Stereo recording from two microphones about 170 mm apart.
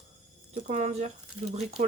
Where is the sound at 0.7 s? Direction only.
45° right (ahead or behind).